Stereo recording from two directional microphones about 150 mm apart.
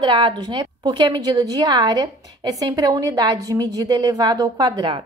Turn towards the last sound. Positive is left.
turn(degrees=-30)  # may be behind; listen again after turning